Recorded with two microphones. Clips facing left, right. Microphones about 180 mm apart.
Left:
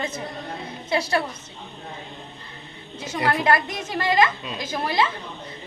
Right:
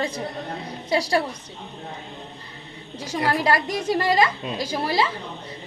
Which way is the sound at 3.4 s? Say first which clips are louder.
Right 1 dB; 35° right (ahead or behind).